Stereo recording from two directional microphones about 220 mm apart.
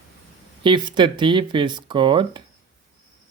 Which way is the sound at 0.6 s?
20° right (ahead or behind).